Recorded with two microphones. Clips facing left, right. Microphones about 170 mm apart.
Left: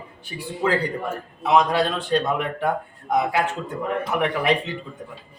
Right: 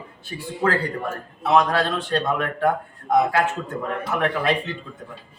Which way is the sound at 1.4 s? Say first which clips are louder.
Even; 15° left (ahead or behind).